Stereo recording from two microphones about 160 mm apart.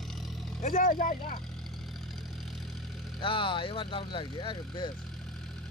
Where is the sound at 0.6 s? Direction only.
55° left (ahead or behind).